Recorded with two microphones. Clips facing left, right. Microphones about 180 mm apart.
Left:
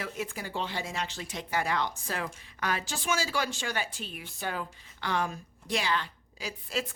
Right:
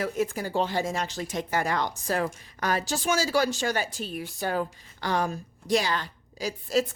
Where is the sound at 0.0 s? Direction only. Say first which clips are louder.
Right 8 dB; 45° right (ahead or behind).